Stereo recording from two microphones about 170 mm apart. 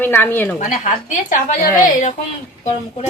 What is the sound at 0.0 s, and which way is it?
Speech, 10° left (ahead or behind).